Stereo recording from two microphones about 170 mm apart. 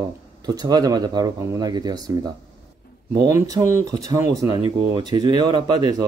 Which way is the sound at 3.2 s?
20° right (ahead or behind).